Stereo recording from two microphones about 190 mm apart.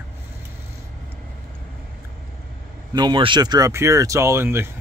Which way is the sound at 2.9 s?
25° right (ahead or behind).